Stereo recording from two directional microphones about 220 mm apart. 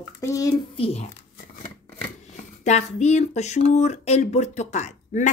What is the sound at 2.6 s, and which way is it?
Speech, 30° left (ahead or behind).